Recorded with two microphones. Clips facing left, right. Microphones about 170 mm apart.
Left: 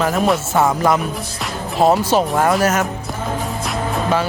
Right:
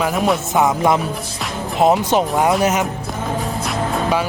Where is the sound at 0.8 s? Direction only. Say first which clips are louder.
Even; 25° right (ahead or behind).